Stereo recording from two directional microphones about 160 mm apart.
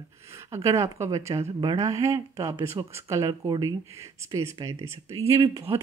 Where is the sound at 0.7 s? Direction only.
20° right (ahead or behind).